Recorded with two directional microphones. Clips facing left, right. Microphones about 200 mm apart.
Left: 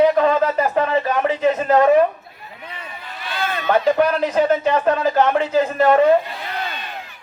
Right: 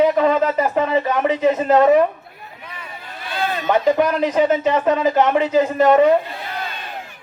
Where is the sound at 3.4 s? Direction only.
35° right (ahead or behind).